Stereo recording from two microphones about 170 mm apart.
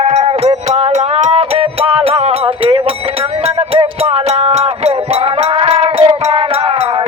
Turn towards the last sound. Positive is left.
turn(degrees=-35)  # may be behind; listen again after turning